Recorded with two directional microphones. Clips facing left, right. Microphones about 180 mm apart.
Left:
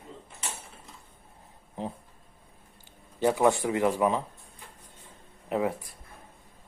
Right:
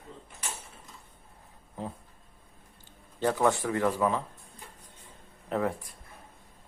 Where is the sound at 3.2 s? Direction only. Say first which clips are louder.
Left 3 dB; 10° left (ahead or behind).